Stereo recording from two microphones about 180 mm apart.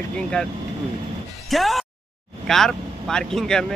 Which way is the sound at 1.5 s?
Centre (ahead or behind).